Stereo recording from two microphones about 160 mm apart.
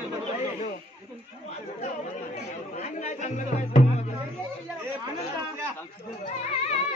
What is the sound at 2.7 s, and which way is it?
Speech, 45° left (ahead or behind).